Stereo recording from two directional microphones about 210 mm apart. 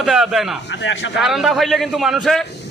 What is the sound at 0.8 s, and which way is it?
Speech, 60° left (ahead or behind).